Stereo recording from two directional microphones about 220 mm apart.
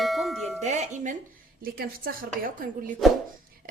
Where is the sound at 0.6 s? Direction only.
30° right (ahead or behind).